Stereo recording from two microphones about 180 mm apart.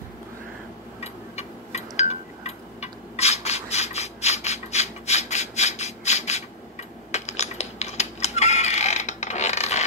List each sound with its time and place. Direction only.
1.0 s tick-tock: 35° left (ahead or behind)